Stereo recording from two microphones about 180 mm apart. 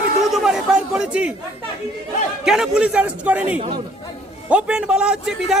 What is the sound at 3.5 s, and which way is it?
Speech, 30° right (ahead or behind).